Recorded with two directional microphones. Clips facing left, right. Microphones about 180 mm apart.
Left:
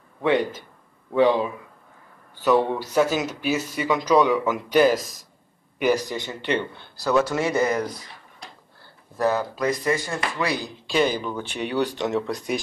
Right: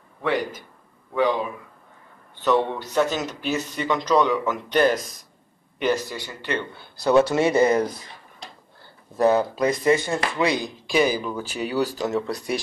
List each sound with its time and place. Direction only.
0.2 s a man's voice: 25° left (ahead or behind)
2.4 s speech: 10° left (ahead or behind)
7.0 s speech: 25° right (ahead or behind)
9.1 s speech: 20° right (ahead or behind); by 12.5 s centre (ahead or behind)